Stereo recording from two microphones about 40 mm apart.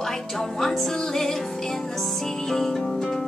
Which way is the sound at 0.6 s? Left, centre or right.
Centre.